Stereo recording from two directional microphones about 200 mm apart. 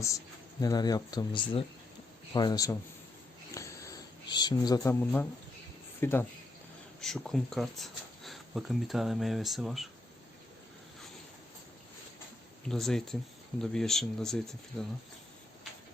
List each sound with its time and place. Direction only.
0.6 s speech: 20° left (ahead or behind)
3.5 s a sound: 15° left (ahead or behind)
6.0 s speech: 10° left (ahead or behind)
12.6 s speech: 5° left (ahead or behind)